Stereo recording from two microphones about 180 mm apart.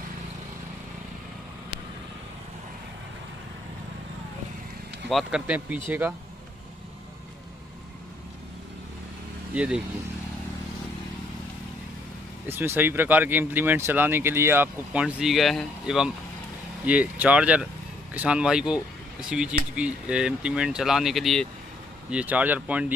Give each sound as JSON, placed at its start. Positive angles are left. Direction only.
{"t": 5.1, "sound": "speech", "side_deg": -5}
{"t": 9.5, "sound": "speech", "side_deg": -5}
{"t": 12.4, "sound": "speech", "side_deg": -10}